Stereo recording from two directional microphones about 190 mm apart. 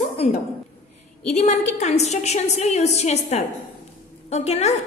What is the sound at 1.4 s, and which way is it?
A woman's voice, 35° left (ahead or behind).